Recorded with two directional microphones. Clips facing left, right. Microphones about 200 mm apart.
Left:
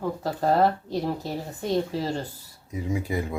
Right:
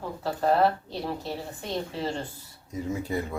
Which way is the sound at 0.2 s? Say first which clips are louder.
Even; 40° left (ahead or behind).